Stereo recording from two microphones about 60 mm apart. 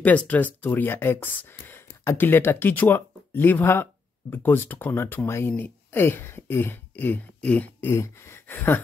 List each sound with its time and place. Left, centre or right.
0.0 s speech: left
7.9 s speech: left
8.5 s speech: left